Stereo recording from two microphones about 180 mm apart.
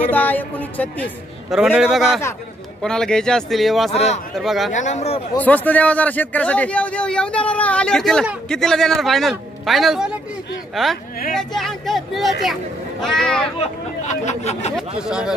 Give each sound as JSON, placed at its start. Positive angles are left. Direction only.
{"t": 0.1, "sound": "a man's voice", "side_deg": 10}
{"t": 1.5, "sound": "a man's voice", "side_deg": -5}
{"t": 3.9, "sound": "speech", "side_deg": 35}
{"t": 4.4, "sound": "a man's voice", "side_deg": 0}
{"t": 4.7, "sound": "speech", "side_deg": 40}
{"t": 5.4, "sound": "a man's voice", "side_deg": 10}
{"t": 14.2, "sound": "speech", "side_deg": 35}
{"t": 15.0, "sound": "a man's voice", "side_deg": -5}